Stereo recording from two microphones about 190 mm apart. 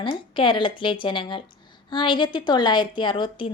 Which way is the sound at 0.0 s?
25° left (ahead or behind).